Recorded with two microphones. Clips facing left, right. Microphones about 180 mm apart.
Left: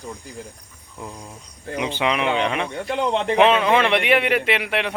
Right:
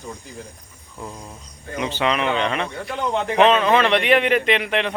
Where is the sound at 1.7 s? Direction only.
15° left (ahead or behind).